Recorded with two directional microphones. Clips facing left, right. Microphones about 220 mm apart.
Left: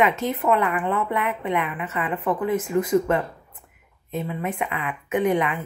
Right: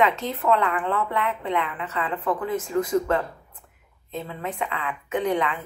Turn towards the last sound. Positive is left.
turn(degrees=20)  # may be behind; listen again after turning